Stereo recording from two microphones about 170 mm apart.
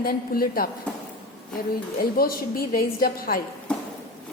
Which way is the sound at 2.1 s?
60° left (ahead or behind).